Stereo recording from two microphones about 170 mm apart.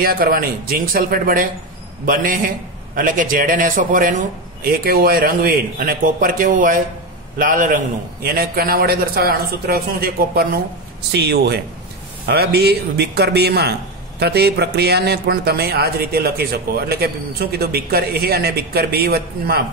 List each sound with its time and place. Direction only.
0.0 s a man's voice: 60° right (ahead or behind)
3.0 s a man's voice: 50° right (ahead or behind)
11.1 s speech: 75° right (ahead or behind)